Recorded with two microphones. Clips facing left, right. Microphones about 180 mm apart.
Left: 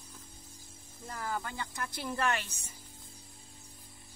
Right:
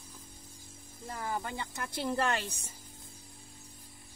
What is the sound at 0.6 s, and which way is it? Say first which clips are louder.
Speech: right 2 dB; 20° right (ahead or behind).